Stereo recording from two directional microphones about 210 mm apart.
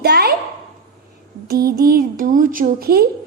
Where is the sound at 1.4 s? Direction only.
45° right (ahead or behind).